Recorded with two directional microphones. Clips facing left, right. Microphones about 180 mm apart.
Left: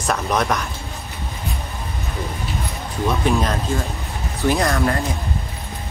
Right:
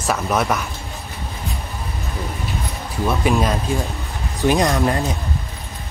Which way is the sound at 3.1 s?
10° right (ahead or behind).